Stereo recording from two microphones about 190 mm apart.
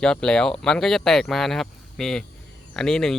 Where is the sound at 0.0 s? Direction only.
5° left (ahead or behind).